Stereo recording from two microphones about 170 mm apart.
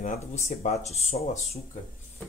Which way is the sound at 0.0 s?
40° left (ahead or behind).